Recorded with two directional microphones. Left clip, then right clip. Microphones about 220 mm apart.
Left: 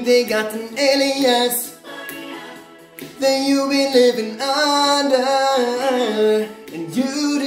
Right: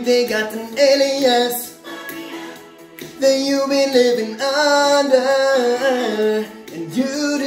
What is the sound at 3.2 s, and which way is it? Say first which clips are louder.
Music: right 1 dB; 15° left (ahead or behind).